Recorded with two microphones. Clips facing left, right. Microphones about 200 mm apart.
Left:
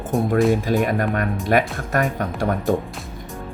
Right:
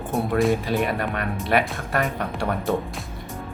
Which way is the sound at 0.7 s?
45° left (ahead or behind).